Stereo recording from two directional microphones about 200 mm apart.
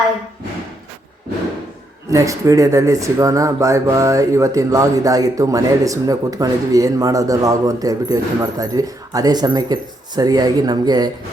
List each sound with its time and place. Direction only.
2.0 s speech: 15° right (ahead or behind)